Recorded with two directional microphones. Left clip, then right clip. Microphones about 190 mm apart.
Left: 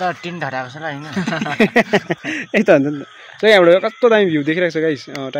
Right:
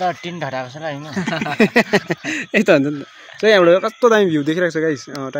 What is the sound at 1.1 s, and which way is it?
Speech, 10° left (ahead or behind).